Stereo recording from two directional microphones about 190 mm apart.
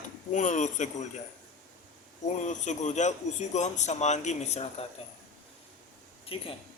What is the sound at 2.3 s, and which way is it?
A man's voice, 40° left (ahead or behind).